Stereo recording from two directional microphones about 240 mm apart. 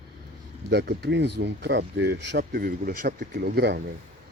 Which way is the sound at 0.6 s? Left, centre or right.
Right.